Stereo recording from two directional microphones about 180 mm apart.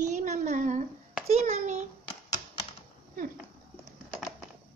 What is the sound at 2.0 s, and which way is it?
Typewriter, 30° left (ahead or behind).